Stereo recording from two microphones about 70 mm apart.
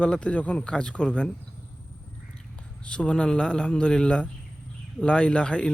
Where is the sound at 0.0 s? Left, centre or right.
Centre.